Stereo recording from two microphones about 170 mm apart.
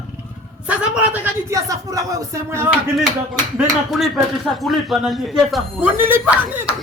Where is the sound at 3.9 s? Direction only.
Centre (ahead or behind).